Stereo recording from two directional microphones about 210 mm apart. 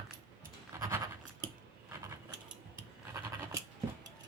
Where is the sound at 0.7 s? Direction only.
15° right (ahead or behind).